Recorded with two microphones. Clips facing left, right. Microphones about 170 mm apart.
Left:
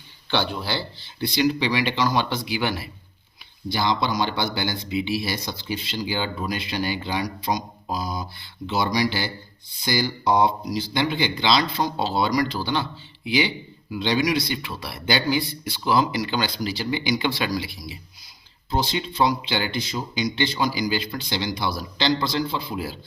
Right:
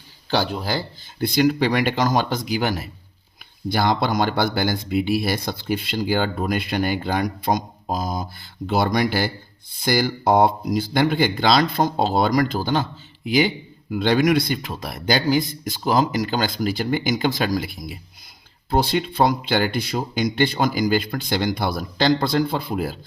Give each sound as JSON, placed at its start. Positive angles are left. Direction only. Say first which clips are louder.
{"t": 0.3, "sound": "speech", "louder": "right 3 dB", "side_deg": -40}